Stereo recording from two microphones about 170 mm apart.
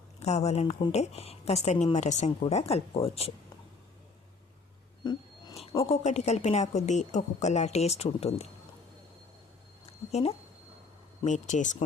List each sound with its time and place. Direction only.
0.2 s a woman's voice: 40° left (ahead or behind)
5.0 s speech: 25° left (ahead or behind)
5.7 s a woman's voice: 40° left (ahead or behind)
10.1 s a woman's voice: 40° left (ahead or behind)